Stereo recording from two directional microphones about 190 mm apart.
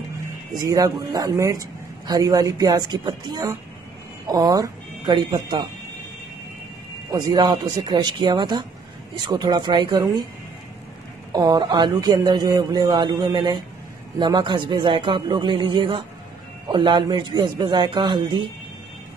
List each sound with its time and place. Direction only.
0.6 s speech: 20° right (ahead or behind)
7.1 s speech: 20° right (ahead or behind)
11.3 s speech: 20° right (ahead or behind)